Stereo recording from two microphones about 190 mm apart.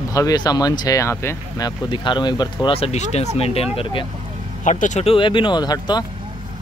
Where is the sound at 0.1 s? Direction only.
20° left (ahead or behind).